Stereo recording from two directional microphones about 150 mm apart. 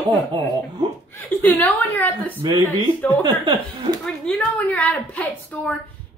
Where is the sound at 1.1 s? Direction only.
10° left (ahead or behind).